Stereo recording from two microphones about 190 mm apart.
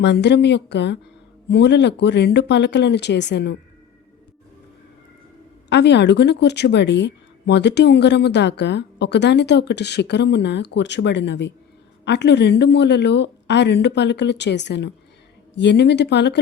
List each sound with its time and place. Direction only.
0.0 s speech: 65° left (ahead or behind)
5.6 s speech: 65° left (ahead or behind)